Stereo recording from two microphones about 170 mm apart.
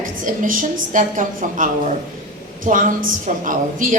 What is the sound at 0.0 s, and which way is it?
A woman's voice, 50° right (ahead or behind).